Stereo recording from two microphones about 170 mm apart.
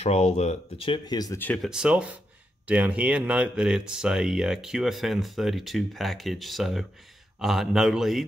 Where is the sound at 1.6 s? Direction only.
5° right (ahead or behind).